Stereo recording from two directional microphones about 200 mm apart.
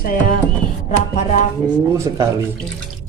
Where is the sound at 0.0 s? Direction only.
45° left (ahead or behind).